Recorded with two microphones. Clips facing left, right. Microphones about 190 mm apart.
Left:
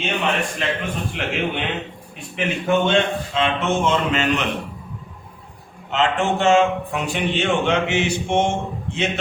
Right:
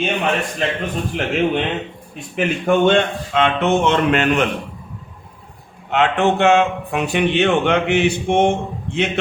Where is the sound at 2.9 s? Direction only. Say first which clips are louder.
Right 3 dB; 55° right (ahead or behind).